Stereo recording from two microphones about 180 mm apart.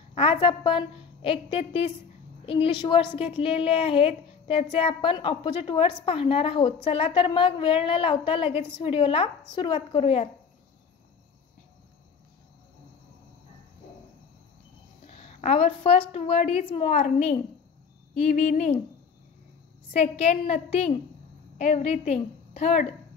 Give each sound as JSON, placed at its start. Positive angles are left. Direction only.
{"t": 0.1, "sound": "a woman's voice", "side_deg": 30}
{"t": 15.0, "sound": "a woman's voice", "side_deg": 40}
{"t": 19.9, "sound": "a woman's voice", "side_deg": 35}